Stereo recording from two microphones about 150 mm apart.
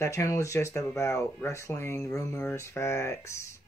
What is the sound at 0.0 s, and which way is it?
Speech, 20° left (ahead or behind).